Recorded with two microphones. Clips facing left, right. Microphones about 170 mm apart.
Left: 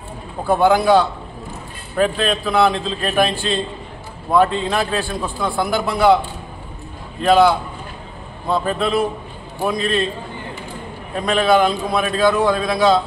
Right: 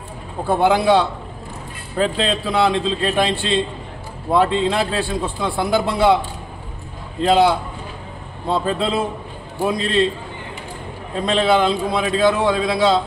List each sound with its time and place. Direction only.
0.5 s a man's voice: 25° right (ahead or behind)
7.2 s a man's voice: 25° right (ahead or behind)
11.1 s a man's voice: 25° right (ahead or behind)